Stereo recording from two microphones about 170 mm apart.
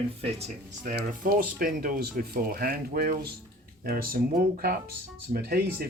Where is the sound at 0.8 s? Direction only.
55° right (ahead or behind).